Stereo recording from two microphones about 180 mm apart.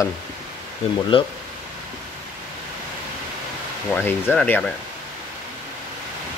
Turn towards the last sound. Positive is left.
turn(degrees=5)  # may be behind; listen again after turning